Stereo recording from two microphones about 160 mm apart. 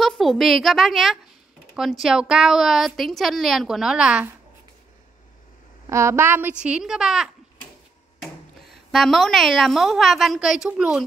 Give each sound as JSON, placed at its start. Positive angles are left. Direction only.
{"t": 0.0, "sound": "a woman's voice", "side_deg": 0}
{"t": 5.9, "sound": "a woman's voice", "side_deg": -15}
{"t": 8.9, "sound": "a woman's voice", "side_deg": 0}